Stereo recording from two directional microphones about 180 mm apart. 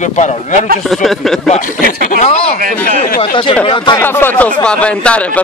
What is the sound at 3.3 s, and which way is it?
Speech, 30° left (ahead or behind).